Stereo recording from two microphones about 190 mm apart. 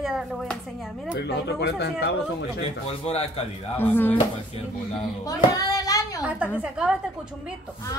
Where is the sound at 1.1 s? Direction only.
65° left (ahead or behind).